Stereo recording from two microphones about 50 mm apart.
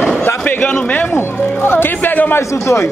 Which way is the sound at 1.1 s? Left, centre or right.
Left.